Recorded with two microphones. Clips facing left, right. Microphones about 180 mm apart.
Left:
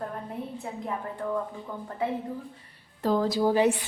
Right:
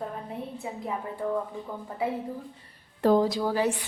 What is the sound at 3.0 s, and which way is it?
Speech, 65° right (ahead or behind).